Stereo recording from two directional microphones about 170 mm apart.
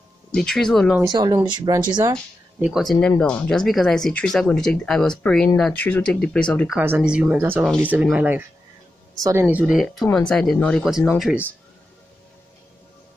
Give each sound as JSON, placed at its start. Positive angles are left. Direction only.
{"t": 0.3, "sound": "speech", "side_deg": 5}
{"t": 1.0, "sound": "speech", "side_deg": -25}
{"t": 2.6, "sound": "speech", "side_deg": 0}
{"t": 6.8, "sound": "speech", "side_deg": -10}